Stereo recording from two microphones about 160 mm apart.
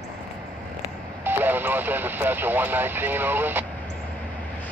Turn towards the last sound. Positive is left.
turn(degrees=-10)  # may be behind; listen again after turning